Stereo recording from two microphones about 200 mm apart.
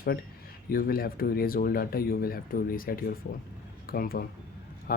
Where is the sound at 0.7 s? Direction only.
45° left (ahead or behind).